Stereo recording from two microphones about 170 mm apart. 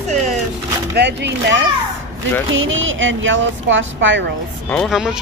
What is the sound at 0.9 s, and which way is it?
Speech, 90° right.